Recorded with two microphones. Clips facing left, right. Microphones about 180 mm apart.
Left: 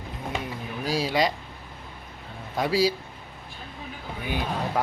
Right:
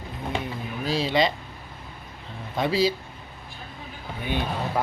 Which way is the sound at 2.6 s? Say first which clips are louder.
Even; 10° left (ahead or behind).